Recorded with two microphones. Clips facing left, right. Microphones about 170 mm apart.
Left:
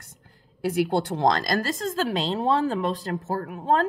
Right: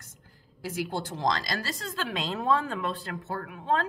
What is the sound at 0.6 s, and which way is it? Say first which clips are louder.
A woman's voice: left 9 dB; 65° left (ahead or behind).